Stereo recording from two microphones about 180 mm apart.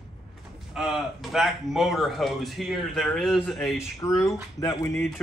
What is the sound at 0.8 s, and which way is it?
Speech, centre (ahead or behind).